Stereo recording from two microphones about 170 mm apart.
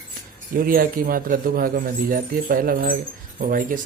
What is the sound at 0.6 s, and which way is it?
Speech, 55° right (ahead or behind).